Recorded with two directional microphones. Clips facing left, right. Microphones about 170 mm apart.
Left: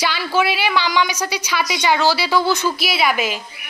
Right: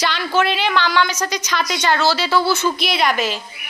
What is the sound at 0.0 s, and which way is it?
Speech, 10° left (ahead or behind).